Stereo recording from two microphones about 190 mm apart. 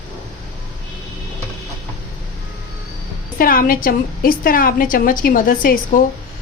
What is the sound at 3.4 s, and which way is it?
A woman's voice, 50° left (ahead or behind).